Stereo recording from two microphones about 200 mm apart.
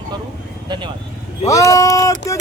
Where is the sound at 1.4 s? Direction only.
15° left (ahead or behind).